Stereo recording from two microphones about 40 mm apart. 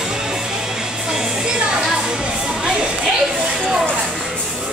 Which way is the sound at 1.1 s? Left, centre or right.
Centre.